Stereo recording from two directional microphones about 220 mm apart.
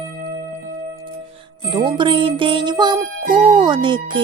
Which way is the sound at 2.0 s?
20° right (ahead or behind).